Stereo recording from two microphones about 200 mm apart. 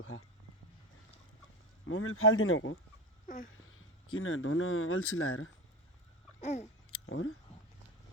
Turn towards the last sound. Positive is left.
turn(degrees=90)